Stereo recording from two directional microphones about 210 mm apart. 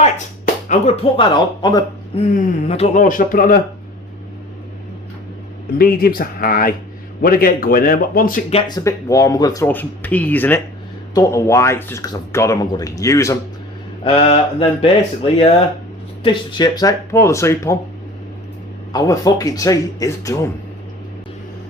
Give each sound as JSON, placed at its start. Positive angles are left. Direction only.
{"t": 0.7, "sound": "speech", "side_deg": 25}
{"t": 2.3, "sound": "speech", "side_deg": 35}
{"t": 5.7, "sound": "a man's voice", "side_deg": 45}
{"t": 8.4, "sound": "speech", "side_deg": 25}
{"t": 14.0, "sound": "speech", "side_deg": 25}
{"t": 18.9, "sound": "speech", "side_deg": 15}